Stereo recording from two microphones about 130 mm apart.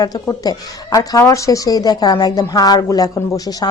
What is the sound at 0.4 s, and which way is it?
Speech, 25° left (ahead or behind).